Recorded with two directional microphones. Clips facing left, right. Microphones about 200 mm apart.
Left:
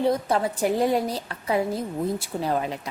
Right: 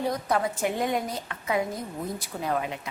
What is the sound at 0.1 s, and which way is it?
A woman's voice, 30° left (ahead or behind).